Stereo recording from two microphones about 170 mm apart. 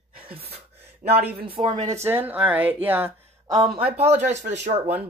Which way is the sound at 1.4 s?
30° right (ahead or behind).